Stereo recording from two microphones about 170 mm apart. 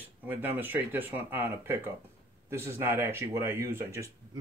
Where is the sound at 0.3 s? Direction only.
10° right (ahead or behind).